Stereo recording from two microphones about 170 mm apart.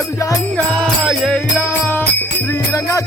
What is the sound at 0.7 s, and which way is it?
Music, 5° left (ahead or behind).